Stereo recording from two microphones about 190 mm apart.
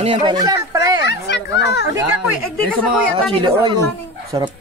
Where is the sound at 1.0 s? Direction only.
65° left (ahead or behind).